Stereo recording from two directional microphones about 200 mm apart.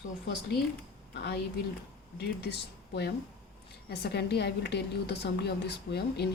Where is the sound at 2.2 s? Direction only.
55° left (ahead or behind).